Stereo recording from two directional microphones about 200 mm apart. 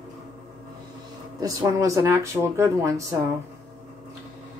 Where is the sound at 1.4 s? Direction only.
15° right (ahead or behind).